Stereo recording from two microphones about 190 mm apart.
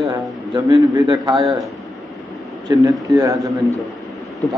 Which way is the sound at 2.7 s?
20° right (ahead or behind).